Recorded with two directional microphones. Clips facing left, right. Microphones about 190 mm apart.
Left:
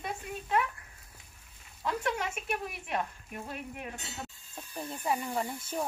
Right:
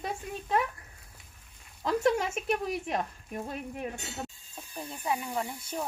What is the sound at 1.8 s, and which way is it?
Speech, 35° right (ahead or behind).